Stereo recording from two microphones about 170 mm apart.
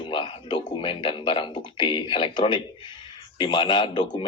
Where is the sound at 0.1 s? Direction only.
30° left (ahead or behind).